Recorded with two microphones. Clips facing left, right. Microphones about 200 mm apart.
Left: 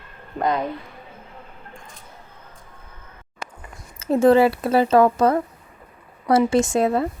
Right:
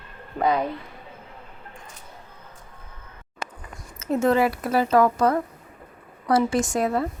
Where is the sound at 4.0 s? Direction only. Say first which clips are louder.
Left 5 dB; 30° left (ahead or behind).